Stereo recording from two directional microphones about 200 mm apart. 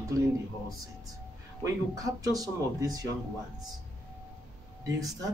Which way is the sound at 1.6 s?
15° right (ahead or behind).